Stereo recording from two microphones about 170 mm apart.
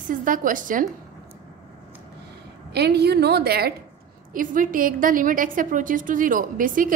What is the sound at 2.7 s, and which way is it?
A woman's voice, 75° right (ahead or behind).